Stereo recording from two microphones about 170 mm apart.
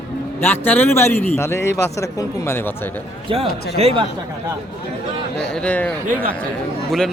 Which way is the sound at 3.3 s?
35° right (ahead or behind).